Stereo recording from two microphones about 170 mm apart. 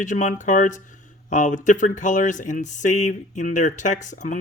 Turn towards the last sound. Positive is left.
turn(degrees=45)  # may be behind; listen again after turning